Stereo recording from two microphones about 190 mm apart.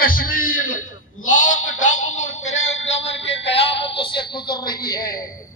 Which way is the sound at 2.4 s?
35° left (ahead or behind).